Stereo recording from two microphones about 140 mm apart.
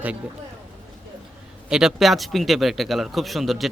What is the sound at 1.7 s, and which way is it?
A man's voice, 5° right (ahead or behind).